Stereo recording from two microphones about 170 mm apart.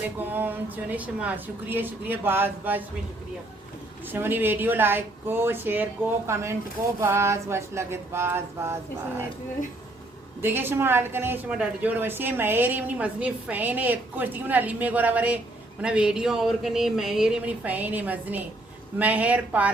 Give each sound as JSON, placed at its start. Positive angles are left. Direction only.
{"t": 0.0, "sound": "a woman's voice", "side_deg": -10}
{"t": 4.1, "sound": "a woman's voice", "side_deg": -10}
{"t": 10.4, "sound": "a woman's voice", "side_deg": -15}